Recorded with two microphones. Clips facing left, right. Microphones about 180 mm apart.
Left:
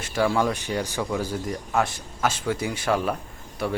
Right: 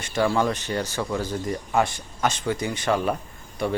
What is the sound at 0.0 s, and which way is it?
Speech, 5° left (ahead or behind).